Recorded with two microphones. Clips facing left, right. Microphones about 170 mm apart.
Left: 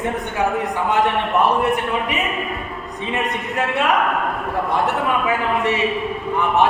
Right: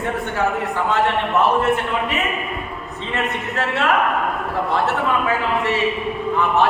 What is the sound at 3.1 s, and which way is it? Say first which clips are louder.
Speech: even; 15° left (ahead or behind).